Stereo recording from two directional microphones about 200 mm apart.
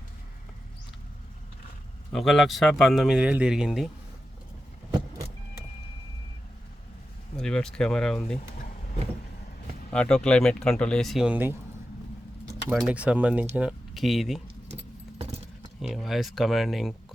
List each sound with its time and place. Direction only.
2.1 s speech: centre (ahead or behind)
7.3 s speech: 5° left (ahead or behind)
9.9 s speech: 5° left (ahead or behind)
12.6 s speech: centre (ahead or behind)
15.2 s keys jangling: 30° right (ahead or behind)
15.8 s speech: centre (ahead or behind)